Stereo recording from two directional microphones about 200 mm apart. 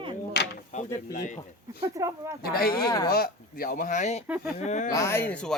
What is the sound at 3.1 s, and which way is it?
Speech, 50° left (ahead or behind).